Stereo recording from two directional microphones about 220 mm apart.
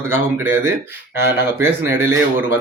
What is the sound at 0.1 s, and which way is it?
Speech, 10° right (ahead or behind).